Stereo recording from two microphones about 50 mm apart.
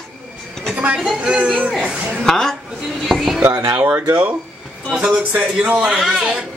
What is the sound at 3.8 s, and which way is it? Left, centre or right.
Speech, right.